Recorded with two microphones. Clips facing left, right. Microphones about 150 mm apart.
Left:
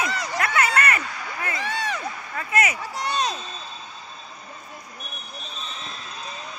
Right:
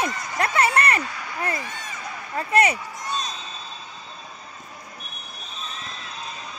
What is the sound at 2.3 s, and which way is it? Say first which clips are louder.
Speech: right 5 dB; 30° right (ahead or behind).